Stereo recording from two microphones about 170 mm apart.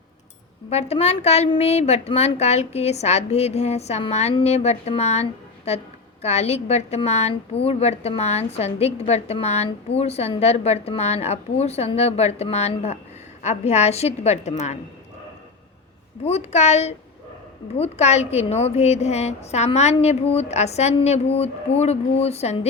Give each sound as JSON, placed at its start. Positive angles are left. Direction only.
{"t": 0.7, "sound": "a woman's voice", "side_deg": 40}
{"t": 16.2, "sound": "a woman's voice", "side_deg": 40}